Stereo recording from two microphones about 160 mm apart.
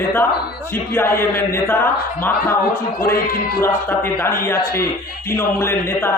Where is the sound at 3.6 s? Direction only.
15° left (ahead or behind).